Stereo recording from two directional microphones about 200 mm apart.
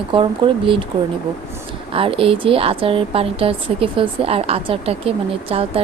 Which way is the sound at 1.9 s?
25° right (ahead or behind).